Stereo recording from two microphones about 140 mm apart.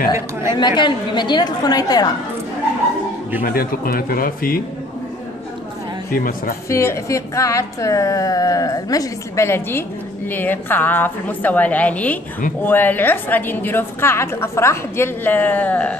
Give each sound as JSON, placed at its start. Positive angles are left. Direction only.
{"t": 0.1, "sound": "speech", "side_deg": -20}
{"t": 0.6, "sound": "a woman's voice", "side_deg": 30}
{"t": 3.4, "sound": "speech", "side_deg": 90}
{"t": 6.1, "sound": "speech", "side_deg": 90}
{"t": 6.7, "sound": "a woman's voice", "side_deg": 20}